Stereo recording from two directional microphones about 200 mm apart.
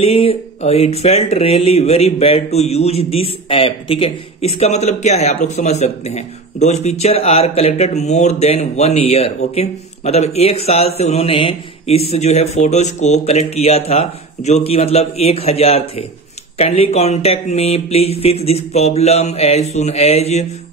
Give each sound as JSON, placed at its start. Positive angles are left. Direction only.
{"t": 0.0, "sound": "speech", "side_deg": 30}